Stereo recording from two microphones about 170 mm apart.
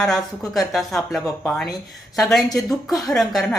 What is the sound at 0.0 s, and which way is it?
Speech, centre (ahead or behind).